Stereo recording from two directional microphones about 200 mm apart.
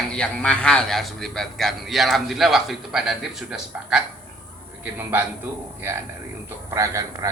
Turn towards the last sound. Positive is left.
turn(degrees=-15)  # may be behind; listen again after turning